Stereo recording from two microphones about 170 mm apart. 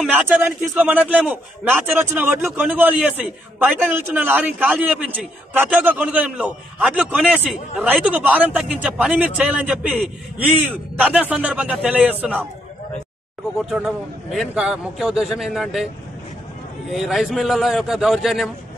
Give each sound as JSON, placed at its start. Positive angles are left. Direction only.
{"t": 0.0, "sound": "a man's voice", "side_deg": -5}
{"t": 13.6, "sound": "a man's voice", "side_deg": 0}
{"t": 16.9, "sound": "a man's voice", "side_deg": 0}